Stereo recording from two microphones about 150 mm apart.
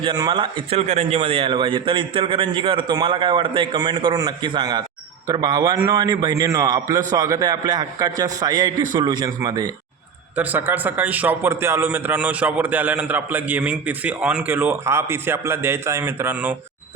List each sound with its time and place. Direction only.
0.0 s a man's voice: 30° right (ahead or behind)
0.8 s a man's voice: 45° right (ahead or behind); by 9.6 s 25° right (ahead or behind)
10.3 s a man's voice: 10° right (ahead or behind)